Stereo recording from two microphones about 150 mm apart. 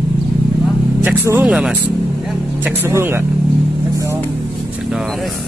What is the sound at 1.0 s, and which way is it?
Speech, 15° right (ahead or behind).